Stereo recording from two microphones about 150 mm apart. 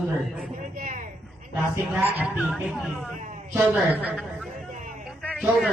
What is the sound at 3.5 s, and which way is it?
Speech, 15° right (ahead or behind).